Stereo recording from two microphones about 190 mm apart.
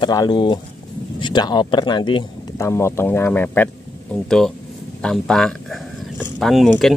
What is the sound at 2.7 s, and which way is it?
Speech, 15° left (ahead or behind).